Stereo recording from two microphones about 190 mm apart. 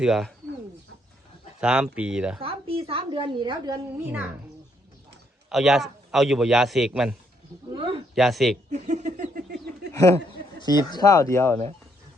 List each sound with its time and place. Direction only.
0.0 s a man's voice: centre (ahead or behind)
1.6 s a man's voice: 5° right (ahead or behind)
2.4 s a woman's voice: 30° right (ahead or behind)
5.5 s a man's voice: centre (ahead or behind)
7.7 s a sound: 25° right (ahead or behind)
8.1 s a man's voice: centre (ahead or behind)
8.7 s a sound: 40° right (ahead or behind)
10.6 s speech: 20° left (ahead or behind)